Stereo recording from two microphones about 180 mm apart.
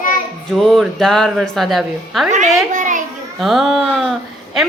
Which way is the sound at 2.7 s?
45° right (ahead or behind).